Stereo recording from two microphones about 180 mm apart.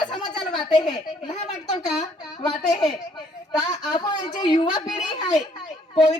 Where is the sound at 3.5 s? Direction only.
25° left (ahead or behind).